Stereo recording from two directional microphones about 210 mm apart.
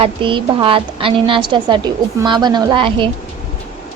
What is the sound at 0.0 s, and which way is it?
A woman's voice, 25° right (ahead or behind).